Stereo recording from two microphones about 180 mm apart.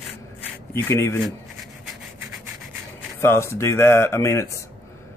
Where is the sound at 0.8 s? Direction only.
15° left (ahead or behind).